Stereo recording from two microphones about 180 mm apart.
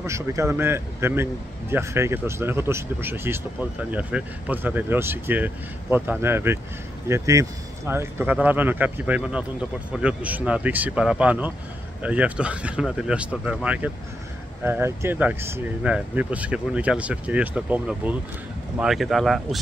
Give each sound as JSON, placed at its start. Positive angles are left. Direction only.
{"t": 0.0, "sound": "speech", "side_deg": -15}